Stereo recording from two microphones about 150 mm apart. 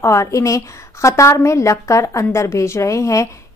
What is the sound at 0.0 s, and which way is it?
A woman's voice, 20° left (ahead or behind).